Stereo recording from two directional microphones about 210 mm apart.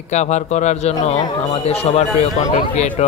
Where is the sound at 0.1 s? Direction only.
35° left (ahead or behind).